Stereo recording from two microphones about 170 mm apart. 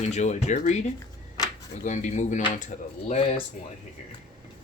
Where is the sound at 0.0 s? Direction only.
45° left (ahead or behind).